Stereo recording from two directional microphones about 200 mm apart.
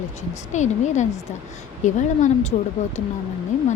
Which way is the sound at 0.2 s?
35° left (ahead or behind).